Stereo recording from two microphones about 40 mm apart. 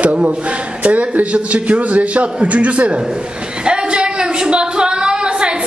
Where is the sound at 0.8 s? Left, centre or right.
Right.